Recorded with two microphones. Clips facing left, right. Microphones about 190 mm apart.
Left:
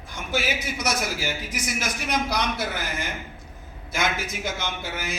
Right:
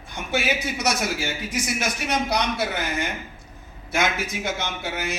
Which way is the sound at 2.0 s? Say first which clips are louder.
Right 1 dB; 60° right (ahead or behind).